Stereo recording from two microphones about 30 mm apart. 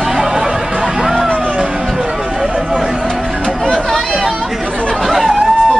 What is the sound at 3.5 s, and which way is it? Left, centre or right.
Chatter, centre.